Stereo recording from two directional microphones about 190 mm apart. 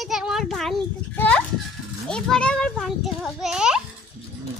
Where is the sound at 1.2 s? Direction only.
5° left (ahead or behind).